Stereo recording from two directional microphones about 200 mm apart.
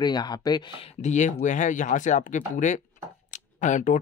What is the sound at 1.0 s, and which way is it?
Speech, 35° left (ahead or behind).